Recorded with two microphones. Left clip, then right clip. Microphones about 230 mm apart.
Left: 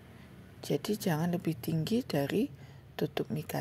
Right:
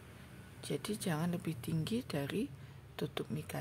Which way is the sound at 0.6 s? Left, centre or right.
Centre.